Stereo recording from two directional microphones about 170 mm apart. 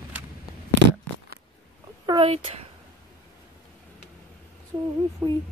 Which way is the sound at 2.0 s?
35° right (ahead or behind).